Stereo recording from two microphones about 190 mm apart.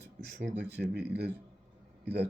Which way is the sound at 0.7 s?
60° right (ahead or behind).